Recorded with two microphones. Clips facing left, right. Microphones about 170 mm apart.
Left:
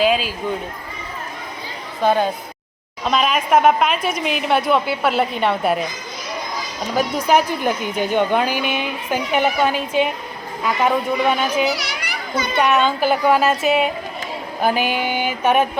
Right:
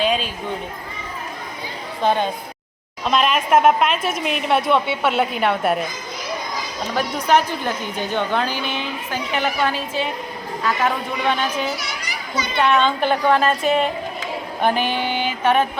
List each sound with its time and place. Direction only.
0.0 s speech: 5° left (ahead or behind)
2.0 s a woman's voice: 5° left (ahead or behind)
6.9 s a woman's voice: 10° left (ahead or behind)
11.6 s children playing: 75° left (ahead or behind); by 12.5 s 55° left (ahead or behind)
12.6 s a woman's voice: 5° left (ahead or behind)